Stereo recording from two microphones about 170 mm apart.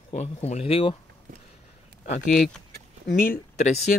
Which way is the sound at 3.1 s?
55° left (ahead or behind).